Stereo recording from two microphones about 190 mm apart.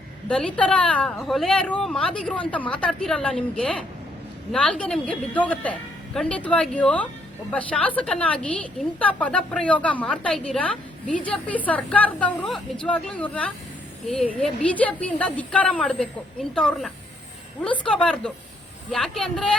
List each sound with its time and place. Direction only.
0.3 s a woman's voice: 5° left (ahead or behind)